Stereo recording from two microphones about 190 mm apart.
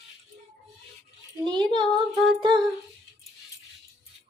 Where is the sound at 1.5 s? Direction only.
25° right (ahead or behind).